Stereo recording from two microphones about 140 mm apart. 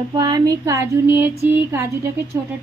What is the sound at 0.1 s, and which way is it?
Speech, 30° right (ahead or behind).